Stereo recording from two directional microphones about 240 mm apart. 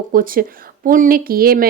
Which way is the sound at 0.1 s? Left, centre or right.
Right.